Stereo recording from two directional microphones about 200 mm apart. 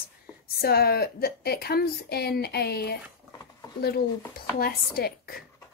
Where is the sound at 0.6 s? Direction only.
50° left (ahead or behind).